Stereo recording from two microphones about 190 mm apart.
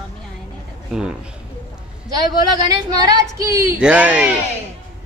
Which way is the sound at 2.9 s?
20° right (ahead or behind).